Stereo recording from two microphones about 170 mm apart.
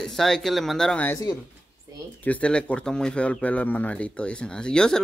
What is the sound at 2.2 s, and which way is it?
Speech, 10° left (ahead or behind).